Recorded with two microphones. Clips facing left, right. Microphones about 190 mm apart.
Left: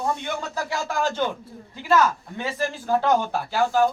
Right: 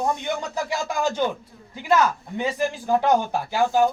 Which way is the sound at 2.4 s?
15° right (ahead or behind).